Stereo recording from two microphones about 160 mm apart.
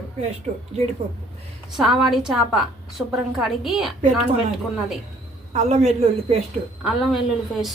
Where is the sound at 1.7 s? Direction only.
Centre (ahead or behind).